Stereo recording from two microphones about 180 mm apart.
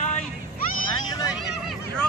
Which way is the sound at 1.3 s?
5° right (ahead or behind).